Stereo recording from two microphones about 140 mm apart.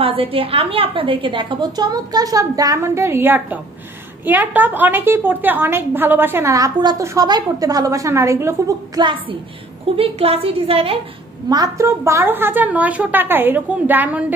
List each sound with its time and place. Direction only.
0.0 s a woman's voice: 40° right (ahead or behind)
9.9 s a woman's voice: 45° right (ahead or behind)
11.4 s a woman's voice: 25° right (ahead or behind)